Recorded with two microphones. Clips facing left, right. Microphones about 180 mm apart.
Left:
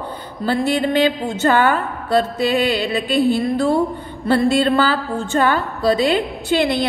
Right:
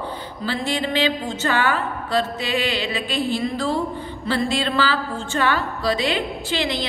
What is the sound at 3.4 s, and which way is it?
A woman's voice, 55° left (ahead or behind).